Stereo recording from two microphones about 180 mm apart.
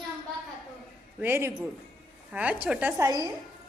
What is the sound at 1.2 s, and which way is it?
A woman's voice, 10° right (ahead or behind).